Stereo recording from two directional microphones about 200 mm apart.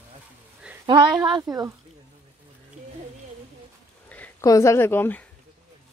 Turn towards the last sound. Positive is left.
turn(degrees=10)  # may be behind; listen again after turning